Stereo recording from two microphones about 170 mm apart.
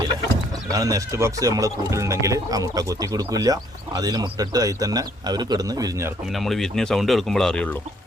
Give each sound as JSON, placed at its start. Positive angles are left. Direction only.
{"t": 0.7, "sound": "speech", "side_deg": -20}
{"t": 6.3, "sound": "speech", "side_deg": 0}